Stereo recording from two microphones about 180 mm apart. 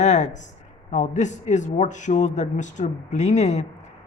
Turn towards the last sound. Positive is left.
turn(degrees=40)  # may be behind; listen again after turning